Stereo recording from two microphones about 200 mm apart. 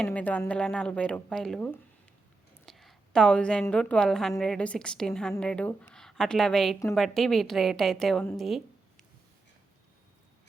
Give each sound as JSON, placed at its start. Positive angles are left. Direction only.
{"t": 0.0, "sound": "a woman's voice", "side_deg": 5}